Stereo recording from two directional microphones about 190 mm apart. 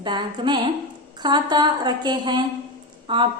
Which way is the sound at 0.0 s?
25° right (ahead or behind).